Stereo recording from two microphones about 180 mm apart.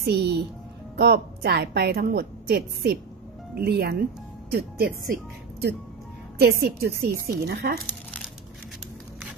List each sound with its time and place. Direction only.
0.0 s a woman's voice: 65° right (ahead or behind)